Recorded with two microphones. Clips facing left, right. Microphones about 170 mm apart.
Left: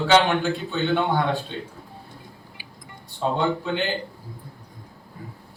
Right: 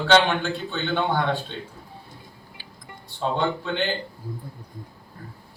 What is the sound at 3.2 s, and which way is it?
Speech, 5° left (ahead or behind).